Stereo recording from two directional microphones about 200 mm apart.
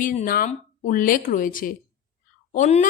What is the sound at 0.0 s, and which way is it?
A woman's voice, 40° left (ahead or behind).